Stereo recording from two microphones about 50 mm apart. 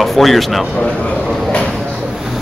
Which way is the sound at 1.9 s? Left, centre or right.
Centre.